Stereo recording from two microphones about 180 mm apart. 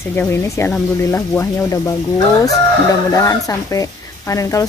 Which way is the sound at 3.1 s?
20° left (ahead or behind).